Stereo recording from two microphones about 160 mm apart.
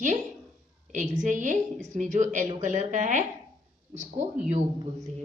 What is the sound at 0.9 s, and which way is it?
Speech, 50° right (ahead or behind).